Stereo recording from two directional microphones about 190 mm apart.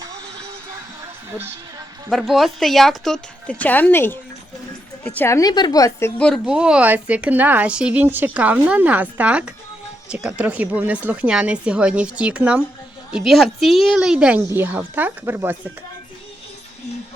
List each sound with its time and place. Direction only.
2.0 s a woman's voice: centre (ahead or behind); by 6.1 s 20° left (ahead or behind)
6.1 s a woman's voice: 5° left (ahead or behind)